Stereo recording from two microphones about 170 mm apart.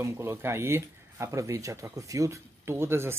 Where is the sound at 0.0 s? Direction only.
15° right (ahead or behind).